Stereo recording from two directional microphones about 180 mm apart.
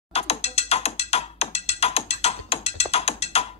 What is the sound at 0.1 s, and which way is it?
Music, 35° left (ahead or behind).